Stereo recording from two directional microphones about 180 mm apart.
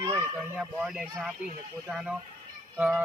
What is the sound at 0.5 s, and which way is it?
Speech, 5° right (ahead or behind).